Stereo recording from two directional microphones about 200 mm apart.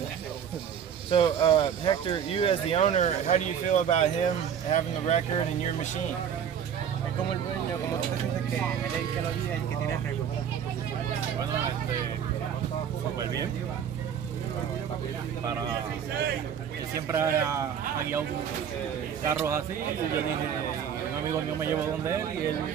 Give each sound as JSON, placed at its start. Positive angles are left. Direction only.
{"t": 1.1, "sound": "speech", "side_deg": 25}
{"t": 16.9, "sound": "speech", "side_deg": -15}
{"t": 19.2, "sound": "speech", "side_deg": -10}
{"t": 21.5, "sound": "speech", "side_deg": -15}